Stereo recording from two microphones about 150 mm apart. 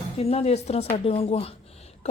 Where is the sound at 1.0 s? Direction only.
40° left (ahead or behind).